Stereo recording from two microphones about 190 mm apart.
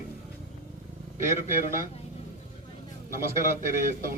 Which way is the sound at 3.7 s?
45° right (ahead or behind).